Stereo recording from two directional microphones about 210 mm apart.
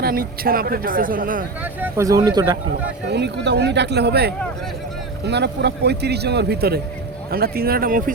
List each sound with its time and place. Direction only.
0.0 s speech: 45° right (ahead or behind)
1.6 s speech: 10° right (ahead or behind)
3.1 s speech: 55° right (ahead or behind)